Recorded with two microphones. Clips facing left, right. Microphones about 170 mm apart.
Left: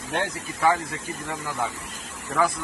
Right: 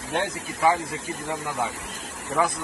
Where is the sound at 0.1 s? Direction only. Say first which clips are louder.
Right 1 dB; centre (ahead or behind).